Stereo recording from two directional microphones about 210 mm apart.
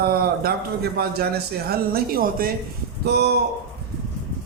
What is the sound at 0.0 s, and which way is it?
Speech, 45° right (ahead or behind).